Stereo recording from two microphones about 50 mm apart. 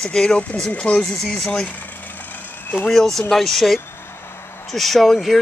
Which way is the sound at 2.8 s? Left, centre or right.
Centre.